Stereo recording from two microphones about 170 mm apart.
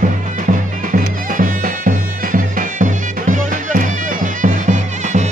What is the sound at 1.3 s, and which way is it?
Music, 55° right (ahead or behind).